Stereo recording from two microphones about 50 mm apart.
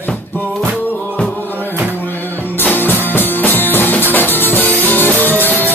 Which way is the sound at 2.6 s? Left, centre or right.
Left.